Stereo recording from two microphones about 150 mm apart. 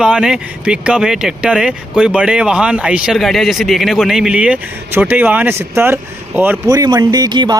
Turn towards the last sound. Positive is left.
turn(degrees=-30)  # may be behind; listen again after turning